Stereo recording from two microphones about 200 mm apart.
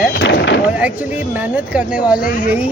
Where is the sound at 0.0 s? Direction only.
60° left (ahead or behind).